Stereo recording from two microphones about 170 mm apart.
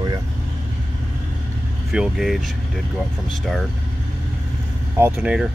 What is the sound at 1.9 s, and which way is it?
Speech, 5° right (ahead or behind).